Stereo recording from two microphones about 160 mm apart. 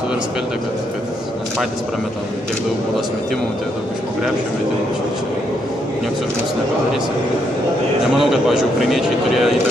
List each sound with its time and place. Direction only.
8.2 s a man's voice: centre (ahead or behind)